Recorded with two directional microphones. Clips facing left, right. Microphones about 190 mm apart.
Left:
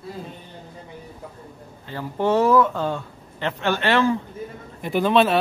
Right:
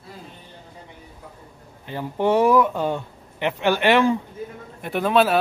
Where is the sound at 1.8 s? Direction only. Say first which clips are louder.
Right 1 dB; 15° right (ahead or behind).